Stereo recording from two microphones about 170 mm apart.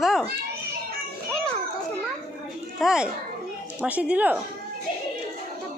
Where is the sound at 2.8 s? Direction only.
5° right (ahead or behind).